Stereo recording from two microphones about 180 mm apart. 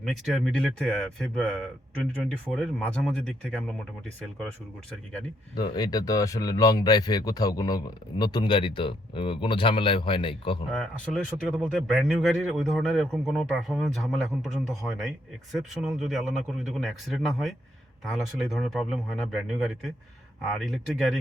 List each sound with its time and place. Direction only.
0.0 s speech: centre (ahead or behind)
5.5 s speech: 20° left (ahead or behind)
10.7 s speech: 5° left (ahead or behind)